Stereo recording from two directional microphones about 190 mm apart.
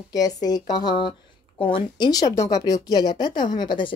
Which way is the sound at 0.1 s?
20° left (ahead or behind).